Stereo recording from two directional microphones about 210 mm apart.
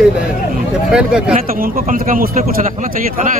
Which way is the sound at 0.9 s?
5° right (ahead or behind).